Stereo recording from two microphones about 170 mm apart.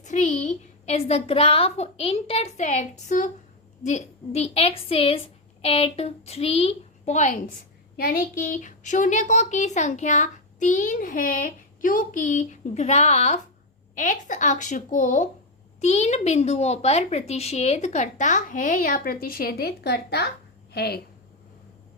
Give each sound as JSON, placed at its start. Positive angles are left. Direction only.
{"t": 0.0, "sound": "a woman's voice", "side_deg": 45}
{"t": 7.9, "sound": "a woman's voice", "side_deg": 60}